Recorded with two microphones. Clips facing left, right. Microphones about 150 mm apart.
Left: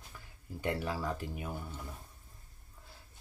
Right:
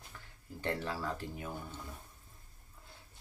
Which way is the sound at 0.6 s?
15° left (ahead or behind).